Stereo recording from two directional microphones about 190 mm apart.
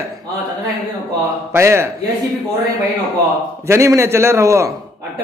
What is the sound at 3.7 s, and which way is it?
A man's voice, 15° right (ahead or behind).